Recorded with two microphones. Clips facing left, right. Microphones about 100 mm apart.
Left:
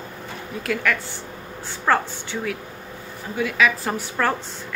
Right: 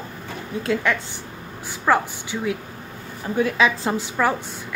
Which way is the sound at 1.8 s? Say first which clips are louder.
Right 1 dB; 10° right (ahead or behind).